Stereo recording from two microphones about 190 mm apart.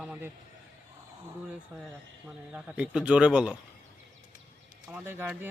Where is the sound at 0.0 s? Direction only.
5° right (ahead or behind).